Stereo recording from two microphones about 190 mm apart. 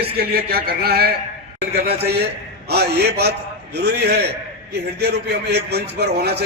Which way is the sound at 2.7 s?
60° right (ahead or behind).